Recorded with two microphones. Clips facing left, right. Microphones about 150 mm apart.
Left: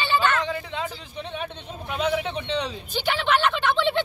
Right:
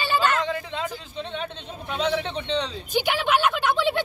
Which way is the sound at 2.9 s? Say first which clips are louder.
Right 1 dB; 10° right (ahead or behind).